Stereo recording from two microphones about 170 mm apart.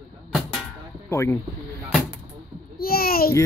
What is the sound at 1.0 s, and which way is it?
Speech, 15° left (ahead or behind).